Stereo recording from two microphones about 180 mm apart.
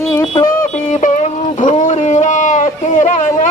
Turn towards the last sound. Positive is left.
turn(degrees=45)  # may be behind; listen again after turning